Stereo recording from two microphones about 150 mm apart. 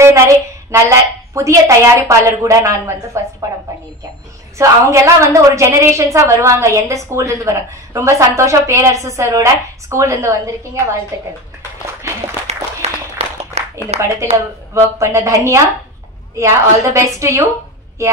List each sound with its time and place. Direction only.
0.0 s a woman's voice: 20° right (ahead or behind)
4.6 s a woman's voice: 20° right (ahead or behind)
12.5 s a sound: 45° right (ahead or behind)
13.9 s speech: 45° right (ahead or behind)
14.3 s a woman's voice: 20° right (ahead or behind)